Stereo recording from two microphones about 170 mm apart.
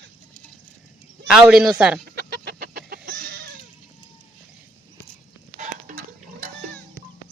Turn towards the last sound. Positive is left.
turn(degrees=-50)  # may be behind; listen again after turning